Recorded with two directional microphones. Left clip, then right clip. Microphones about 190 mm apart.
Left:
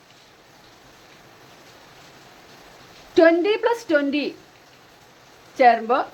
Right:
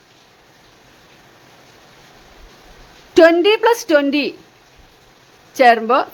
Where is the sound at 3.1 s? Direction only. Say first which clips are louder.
Right 6 dB; 40° right (ahead or behind).